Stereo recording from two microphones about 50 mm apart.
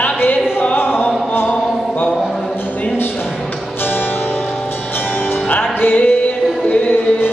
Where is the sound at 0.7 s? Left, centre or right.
Left.